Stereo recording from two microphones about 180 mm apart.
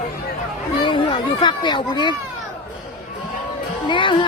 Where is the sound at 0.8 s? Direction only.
25° left (ahead or behind).